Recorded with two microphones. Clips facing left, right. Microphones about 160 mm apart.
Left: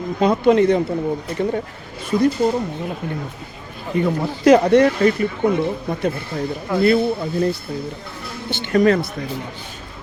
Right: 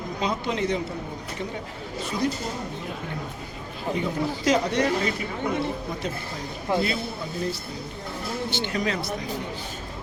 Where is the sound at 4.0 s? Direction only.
60° left (ahead or behind).